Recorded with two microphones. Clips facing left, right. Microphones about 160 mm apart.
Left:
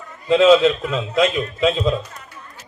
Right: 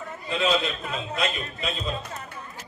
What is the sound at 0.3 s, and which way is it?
A man's voice, 90° left.